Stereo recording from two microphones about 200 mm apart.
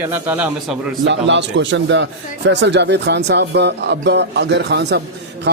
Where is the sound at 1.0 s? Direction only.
65° right (ahead or behind).